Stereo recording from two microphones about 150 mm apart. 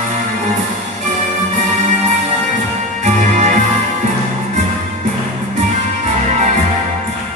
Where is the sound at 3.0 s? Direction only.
55° right (ahead or behind).